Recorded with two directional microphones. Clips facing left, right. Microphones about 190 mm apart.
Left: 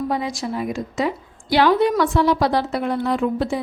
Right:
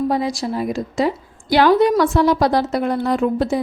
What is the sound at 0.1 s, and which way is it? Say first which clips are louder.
A woman's voice: right 4 dB; 35° right (ahead or behind).